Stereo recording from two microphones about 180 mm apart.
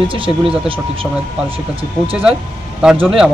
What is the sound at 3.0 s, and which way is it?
Speech, 5° right (ahead or behind).